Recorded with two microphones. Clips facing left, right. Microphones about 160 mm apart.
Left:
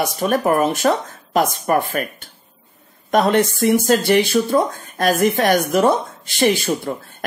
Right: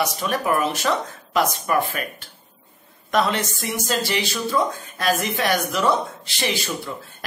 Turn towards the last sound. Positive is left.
turn(degrees=50)  # may be behind; listen again after turning